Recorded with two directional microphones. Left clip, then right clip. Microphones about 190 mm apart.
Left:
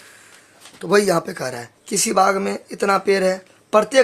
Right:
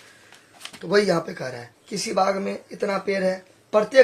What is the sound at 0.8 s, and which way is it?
Speech, 40° left (ahead or behind).